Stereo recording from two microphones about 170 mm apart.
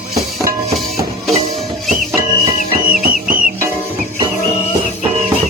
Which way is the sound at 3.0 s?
55° right (ahead or behind).